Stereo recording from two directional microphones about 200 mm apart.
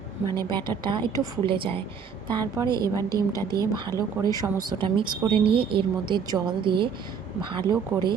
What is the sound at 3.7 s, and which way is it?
Speech, 20° right (ahead or behind).